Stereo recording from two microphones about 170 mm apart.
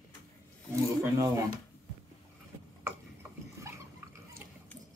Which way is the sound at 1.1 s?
20° right (ahead or behind).